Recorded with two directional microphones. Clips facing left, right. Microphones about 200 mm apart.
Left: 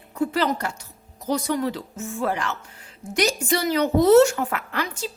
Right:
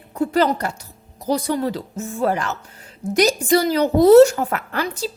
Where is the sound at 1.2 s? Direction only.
35° right (ahead or behind).